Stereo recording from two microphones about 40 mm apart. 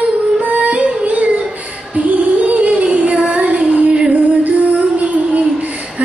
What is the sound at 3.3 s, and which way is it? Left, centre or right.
Female singing, right.